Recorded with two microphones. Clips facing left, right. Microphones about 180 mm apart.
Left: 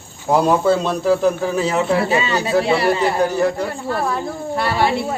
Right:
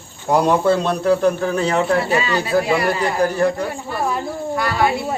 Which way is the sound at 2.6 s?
30° left (ahead or behind).